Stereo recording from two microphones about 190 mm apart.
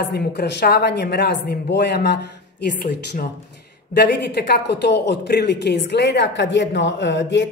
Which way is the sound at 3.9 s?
60° left (ahead or behind).